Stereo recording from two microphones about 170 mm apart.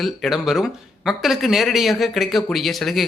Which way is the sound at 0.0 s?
Centre (ahead or behind).